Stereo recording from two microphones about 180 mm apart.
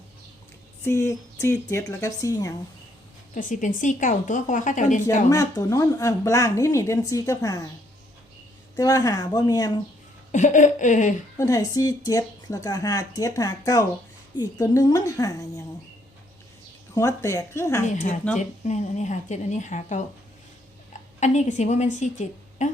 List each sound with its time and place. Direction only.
0.9 s speech: 15° left (ahead or behind)
3.3 s a woman's voice: 45° left (ahead or behind)
5.3 s speech: 20° left (ahead or behind)
8.7 s speech: 20° left (ahead or behind)
10.3 s a woman's voice: 45° left (ahead or behind)
11.3 s speech: 20° left (ahead or behind)
16.9 s speech: 15° left (ahead or behind)
17.8 s a woman's voice: 35° left (ahead or behind)
21.2 s a woman's voice: 40° left (ahead or behind)